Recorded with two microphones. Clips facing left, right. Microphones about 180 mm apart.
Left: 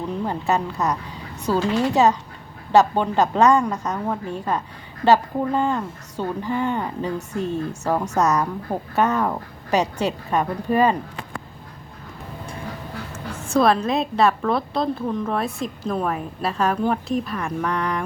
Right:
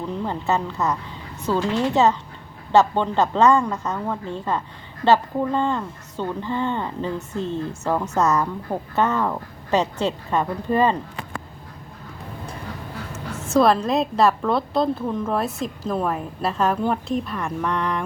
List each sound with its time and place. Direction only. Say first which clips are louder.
0.3 s speech: left 1 dB; 15° left (ahead or behind)
7.3 s speech: left 2 dB; 20° right (ahead or behind)
7.7 s speech: left 1 dB; 15° left (ahead or behind)
13.5 s a woman's voice: right 1 dB; centre (ahead or behind)